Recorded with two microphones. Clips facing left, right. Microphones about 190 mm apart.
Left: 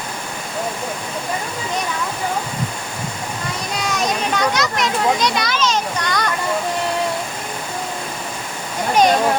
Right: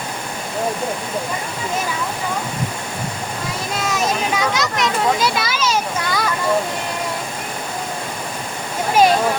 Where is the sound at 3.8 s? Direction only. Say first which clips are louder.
Right 1 dB; centre (ahead or behind).